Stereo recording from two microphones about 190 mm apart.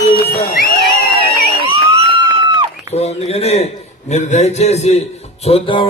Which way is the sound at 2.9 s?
35° left (ahead or behind).